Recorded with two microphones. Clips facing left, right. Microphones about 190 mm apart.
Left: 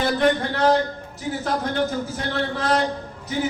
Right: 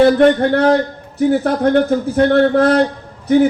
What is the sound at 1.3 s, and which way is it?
A man's voice, 60° right (ahead or behind).